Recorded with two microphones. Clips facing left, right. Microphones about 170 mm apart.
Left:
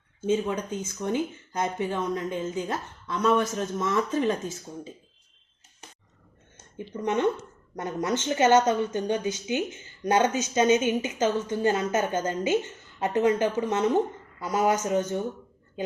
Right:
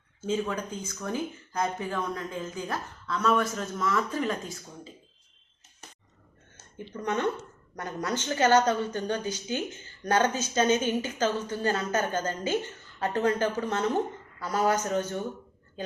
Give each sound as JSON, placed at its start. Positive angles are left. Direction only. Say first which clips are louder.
{"t": 0.3, "sound": "speech", "louder": "left 4 dB", "side_deg": 20}
{"t": 6.9, "sound": "speech", "louder": "left 4 dB", "side_deg": 20}